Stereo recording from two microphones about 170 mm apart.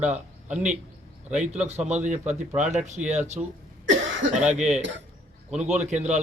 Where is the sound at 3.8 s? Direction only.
90° right.